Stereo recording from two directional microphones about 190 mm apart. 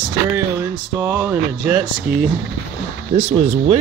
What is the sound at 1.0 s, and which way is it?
Speech, 15° right (ahead or behind).